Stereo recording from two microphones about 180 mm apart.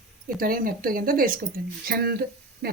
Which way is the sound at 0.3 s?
55° right (ahead or behind).